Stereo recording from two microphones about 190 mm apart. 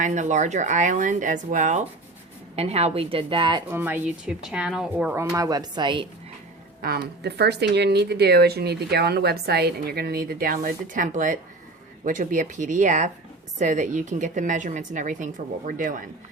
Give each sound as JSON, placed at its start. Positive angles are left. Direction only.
{"t": 0.0, "sound": "a woman's voice", "side_deg": -40}
{"t": 3.7, "sound": "speech", "side_deg": -10}
{"t": 5.4, "sound": "a woman's voice", "side_deg": -20}
{"t": 6.8, "sound": "a woman's voice", "side_deg": -55}